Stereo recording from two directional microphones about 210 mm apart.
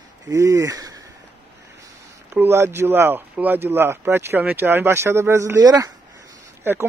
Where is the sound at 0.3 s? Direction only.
15° right (ahead or behind).